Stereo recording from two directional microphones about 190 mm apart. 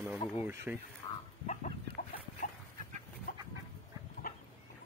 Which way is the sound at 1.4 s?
40° left (ahead or behind).